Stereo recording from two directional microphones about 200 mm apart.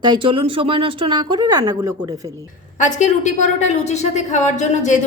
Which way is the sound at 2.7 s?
35° left (ahead or behind).